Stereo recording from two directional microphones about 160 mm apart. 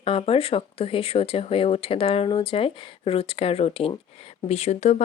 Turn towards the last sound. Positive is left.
turn(degrees=40)  # may be behind; listen again after turning